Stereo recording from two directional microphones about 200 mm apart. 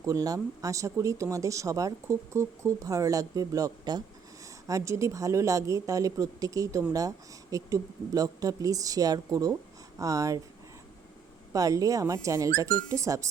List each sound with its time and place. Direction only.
0.0 s speech: 15° right (ahead or behind)
11.5 s speech: 15° right (ahead or behind)